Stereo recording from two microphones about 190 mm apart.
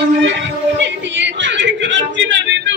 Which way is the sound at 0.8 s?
70° right (ahead or behind).